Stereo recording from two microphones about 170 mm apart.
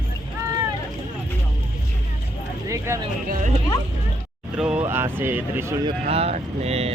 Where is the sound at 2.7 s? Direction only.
20° right (ahead or behind).